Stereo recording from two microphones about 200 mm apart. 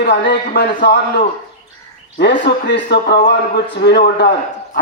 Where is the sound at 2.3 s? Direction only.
55° left (ahead or behind).